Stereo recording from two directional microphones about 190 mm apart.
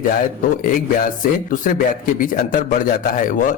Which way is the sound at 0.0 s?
45° left (ahead or behind).